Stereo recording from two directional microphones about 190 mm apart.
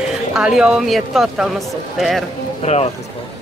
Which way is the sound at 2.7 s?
35° left (ahead or behind).